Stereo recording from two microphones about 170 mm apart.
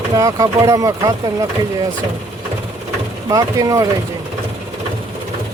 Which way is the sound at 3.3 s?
20° right (ahead or behind).